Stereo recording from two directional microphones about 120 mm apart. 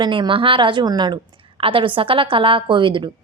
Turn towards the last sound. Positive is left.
turn(degrees=-40)  # may be behind; listen again after turning